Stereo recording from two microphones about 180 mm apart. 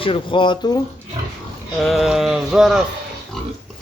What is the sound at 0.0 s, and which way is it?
Speech, 30° left (ahead or behind).